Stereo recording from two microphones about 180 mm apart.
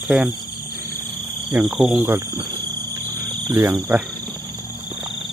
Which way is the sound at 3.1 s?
20° right (ahead or behind).